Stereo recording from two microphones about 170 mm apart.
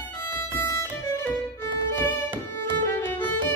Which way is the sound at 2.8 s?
15° left (ahead or behind).